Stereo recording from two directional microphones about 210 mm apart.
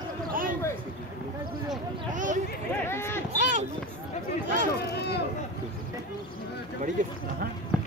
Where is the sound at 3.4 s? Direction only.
35° right (ahead or behind).